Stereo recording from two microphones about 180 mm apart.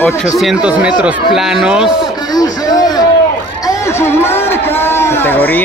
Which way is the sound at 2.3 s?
20° left (ahead or behind).